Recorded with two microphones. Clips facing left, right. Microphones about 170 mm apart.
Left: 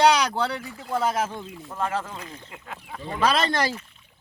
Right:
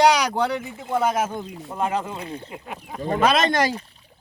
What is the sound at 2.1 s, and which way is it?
Speech, 30° right (ahead or behind).